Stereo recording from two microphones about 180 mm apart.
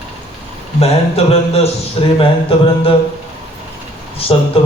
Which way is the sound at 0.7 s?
35° left (ahead or behind).